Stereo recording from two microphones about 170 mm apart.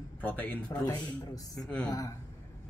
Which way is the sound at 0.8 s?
20° left (ahead or behind).